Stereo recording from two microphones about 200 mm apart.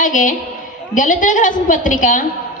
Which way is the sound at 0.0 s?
40° left (ahead or behind).